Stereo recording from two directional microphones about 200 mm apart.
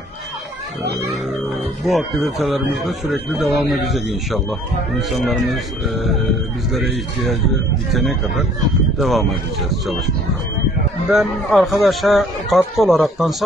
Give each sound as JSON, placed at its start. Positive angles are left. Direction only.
{"t": 1.9, "sound": "speech", "side_deg": 0}
{"t": 7.9, "sound": "speech", "side_deg": 0}
{"t": 11.1, "sound": "speech", "side_deg": 0}